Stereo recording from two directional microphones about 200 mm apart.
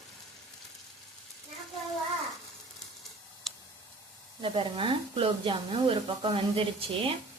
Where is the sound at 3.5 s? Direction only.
Centre (ahead or behind).